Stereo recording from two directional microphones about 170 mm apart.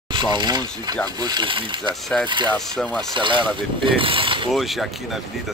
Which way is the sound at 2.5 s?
5° left (ahead or behind).